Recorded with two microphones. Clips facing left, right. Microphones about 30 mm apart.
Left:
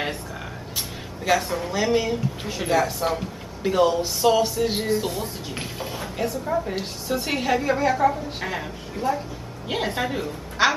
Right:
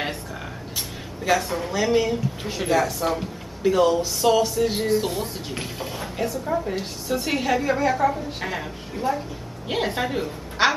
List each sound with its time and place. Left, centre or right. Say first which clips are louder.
1.2 s speech: even; centre
4.6 s music: right 1 dB; centre
4.9 s speech: right 2 dB; centre
10.6 s a woman's voice: even; centre